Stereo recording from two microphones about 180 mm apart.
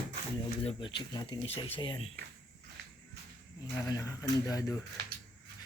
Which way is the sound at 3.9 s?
20° left (ahead or behind).